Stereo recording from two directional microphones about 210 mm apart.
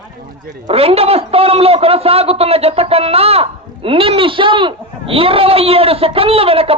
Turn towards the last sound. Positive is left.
turn(degrees=-25)  # may be behind; listen again after turning